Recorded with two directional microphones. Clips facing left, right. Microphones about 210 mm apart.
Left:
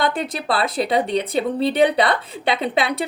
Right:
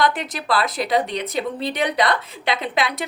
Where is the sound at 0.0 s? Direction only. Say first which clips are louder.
Even; 30° left (ahead or behind).